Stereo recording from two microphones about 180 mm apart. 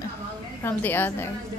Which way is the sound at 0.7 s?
10° left (ahead or behind).